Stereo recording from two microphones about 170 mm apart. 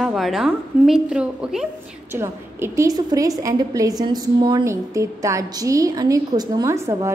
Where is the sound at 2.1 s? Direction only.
15° right (ahead or behind).